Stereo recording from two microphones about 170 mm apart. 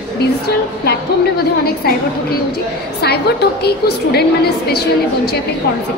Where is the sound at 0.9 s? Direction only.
65° left (ahead or behind).